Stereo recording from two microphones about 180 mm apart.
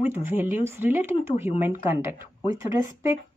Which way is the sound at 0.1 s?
10° right (ahead or behind).